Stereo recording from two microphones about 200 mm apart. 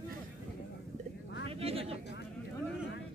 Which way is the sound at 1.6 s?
30° right (ahead or behind).